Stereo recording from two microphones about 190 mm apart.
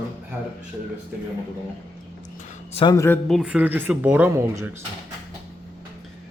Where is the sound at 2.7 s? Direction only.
25° left (ahead or behind).